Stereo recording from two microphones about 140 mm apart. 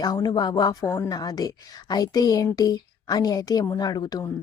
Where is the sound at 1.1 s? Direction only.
30° left (ahead or behind).